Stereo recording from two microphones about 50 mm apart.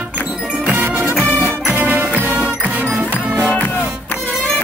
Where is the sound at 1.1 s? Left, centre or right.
Left.